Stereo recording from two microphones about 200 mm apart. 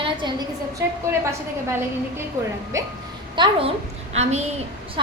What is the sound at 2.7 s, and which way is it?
Speech, 15° right (ahead or behind).